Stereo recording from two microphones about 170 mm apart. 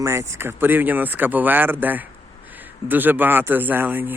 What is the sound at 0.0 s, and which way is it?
Speech, 15° right (ahead or behind).